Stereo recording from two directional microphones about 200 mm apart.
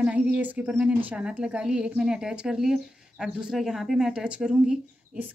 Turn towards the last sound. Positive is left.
turn(degrees=-5)  # may be behind; listen again after turning